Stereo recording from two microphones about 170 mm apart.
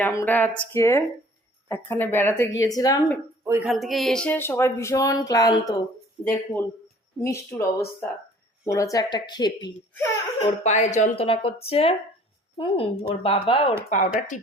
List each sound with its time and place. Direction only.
0.0 s speech: 15° left (ahead or behind)
3.4 s a woman's voice: 15° right (ahead or behind)
3.7 s speech: centre (ahead or behind); by 9.5 s 25° left (ahead or behind)
10.6 s a woman's voice: 45° left (ahead or behind)
11.2 s speech: 35° left (ahead or behind)
14.2 s a woman's voice: 45° left (ahead or behind)